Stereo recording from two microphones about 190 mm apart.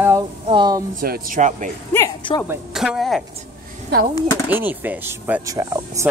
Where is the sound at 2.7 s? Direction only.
Centre (ahead or behind).